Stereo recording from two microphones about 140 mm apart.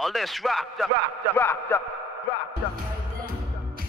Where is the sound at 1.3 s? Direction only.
15° left (ahead or behind).